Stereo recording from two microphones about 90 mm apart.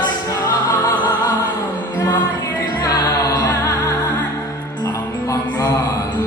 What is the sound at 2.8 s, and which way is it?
Music, 45° left (ahead or behind).